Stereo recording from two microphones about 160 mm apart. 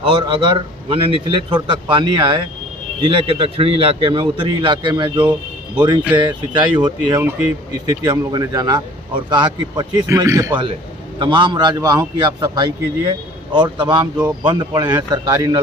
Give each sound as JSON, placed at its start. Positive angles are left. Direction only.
{"t": 0.0, "sound": "a man's voice", "side_deg": -35}
{"t": 11.2, "sound": "a man's voice", "side_deg": -30}